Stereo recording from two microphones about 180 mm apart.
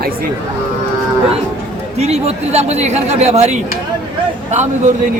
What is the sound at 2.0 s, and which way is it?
Speech, 35° right (ahead or behind).